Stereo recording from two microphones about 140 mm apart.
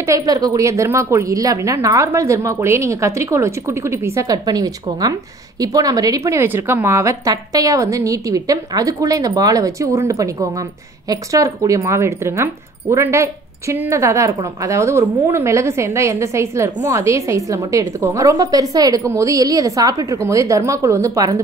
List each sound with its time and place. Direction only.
0.0 s a woman's voice: 25° right (ahead or behind)